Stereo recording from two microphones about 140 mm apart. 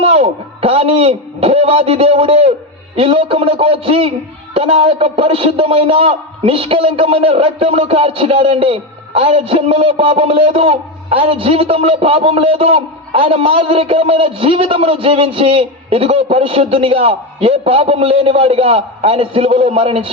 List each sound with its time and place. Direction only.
0.0 s a man's voice: 45° right (ahead or behind)